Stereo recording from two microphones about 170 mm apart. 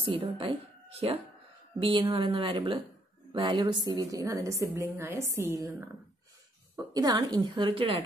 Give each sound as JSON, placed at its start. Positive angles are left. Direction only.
{"t": 0.0, "sound": "a woman's voice", "side_deg": -30}
{"t": 6.9, "sound": "a woman's voice", "side_deg": -20}